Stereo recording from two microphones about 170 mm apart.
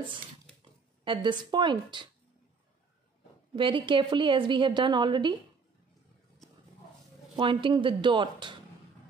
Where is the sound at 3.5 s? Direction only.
30° right (ahead or behind).